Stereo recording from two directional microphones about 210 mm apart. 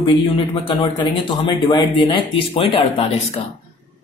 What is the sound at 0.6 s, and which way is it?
Speech, 20° left (ahead or behind).